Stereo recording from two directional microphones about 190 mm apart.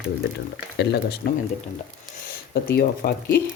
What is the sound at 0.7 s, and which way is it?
Speech, 60° left (ahead or behind).